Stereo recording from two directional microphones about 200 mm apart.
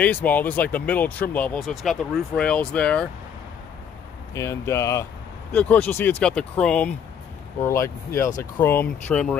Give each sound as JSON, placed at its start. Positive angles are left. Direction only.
{"t": 0.0, "sound": "speech", "side_deg": 10}
{"t": 4.3, "sound": "speech", "side_deg": 15}